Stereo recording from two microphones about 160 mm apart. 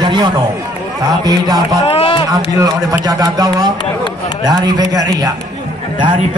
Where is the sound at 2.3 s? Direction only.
20° right (ahead or behind).